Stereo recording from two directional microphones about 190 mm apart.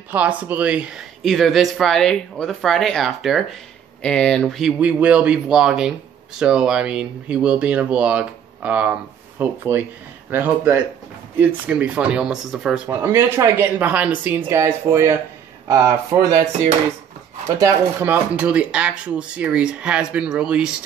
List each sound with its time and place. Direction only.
0.1 s speech: 5° right (ahead or behind)
17.6 s speech: 15° right (ahead or behind)